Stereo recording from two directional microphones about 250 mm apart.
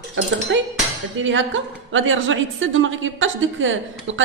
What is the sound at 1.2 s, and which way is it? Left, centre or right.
Speech, right.